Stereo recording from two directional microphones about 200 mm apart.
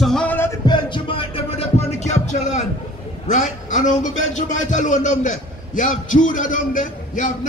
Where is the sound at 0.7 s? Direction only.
25° left (ahead or behind).